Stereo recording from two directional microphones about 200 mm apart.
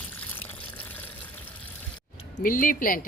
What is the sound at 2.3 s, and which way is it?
Speech, 45° left (ahead or behind).